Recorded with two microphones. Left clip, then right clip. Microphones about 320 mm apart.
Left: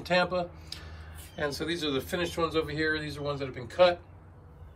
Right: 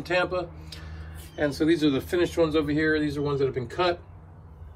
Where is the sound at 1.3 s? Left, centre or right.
Centre.